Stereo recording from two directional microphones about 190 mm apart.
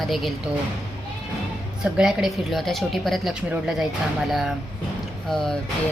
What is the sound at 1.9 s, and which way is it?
Speech, centre (ahead or behind).